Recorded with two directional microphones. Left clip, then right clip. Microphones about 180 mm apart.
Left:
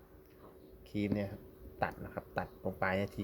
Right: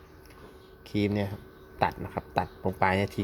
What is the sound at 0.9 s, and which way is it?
Speech, 40° right (ahead or behind).